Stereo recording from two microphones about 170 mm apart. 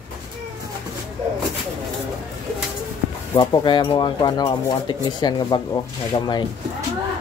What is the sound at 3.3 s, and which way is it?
Speech, 25° left (ahead or behind).